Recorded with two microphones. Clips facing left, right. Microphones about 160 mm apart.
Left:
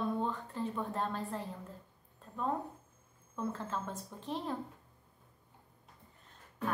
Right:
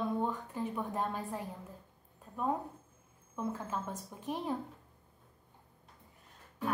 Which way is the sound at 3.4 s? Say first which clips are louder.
Right 1 dB; 15° right (ahead or behind).